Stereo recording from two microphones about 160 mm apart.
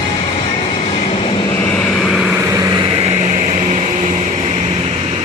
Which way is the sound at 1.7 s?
5° left (ahead or behind).